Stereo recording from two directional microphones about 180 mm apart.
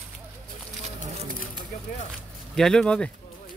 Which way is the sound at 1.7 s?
50° left (ahead or behind).